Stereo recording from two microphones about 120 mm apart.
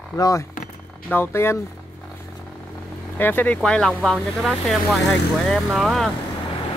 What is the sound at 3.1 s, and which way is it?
Speech, 15° left (ahead or behind).